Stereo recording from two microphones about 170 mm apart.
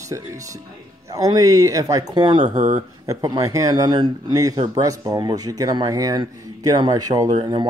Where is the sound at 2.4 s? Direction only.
45° right (ahead or behind).